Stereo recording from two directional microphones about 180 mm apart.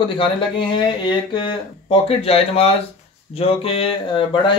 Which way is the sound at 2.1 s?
35° left (ahead or behind).